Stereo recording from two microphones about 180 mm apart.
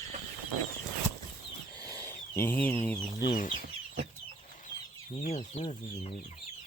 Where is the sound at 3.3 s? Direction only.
45° left (ahead or behind).